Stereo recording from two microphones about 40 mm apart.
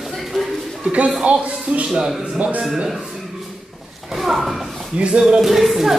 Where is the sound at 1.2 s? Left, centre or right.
Right.